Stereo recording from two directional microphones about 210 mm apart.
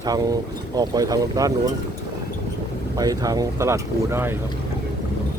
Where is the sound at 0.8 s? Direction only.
15° right (ahead or behind).